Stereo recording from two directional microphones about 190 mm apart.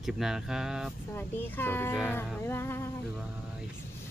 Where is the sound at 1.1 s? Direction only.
10° left (ahead or behind).